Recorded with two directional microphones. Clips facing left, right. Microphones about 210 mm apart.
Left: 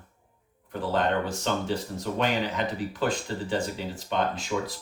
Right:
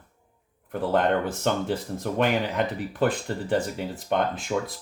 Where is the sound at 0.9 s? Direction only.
55° right (ahead or behind).